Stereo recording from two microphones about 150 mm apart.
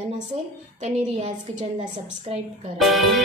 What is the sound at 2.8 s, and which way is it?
Speech, centre (ahead or behind).